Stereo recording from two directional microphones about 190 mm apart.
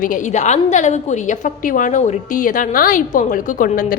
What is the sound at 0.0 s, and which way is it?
A woman's voice, 45° left (ahead or behind).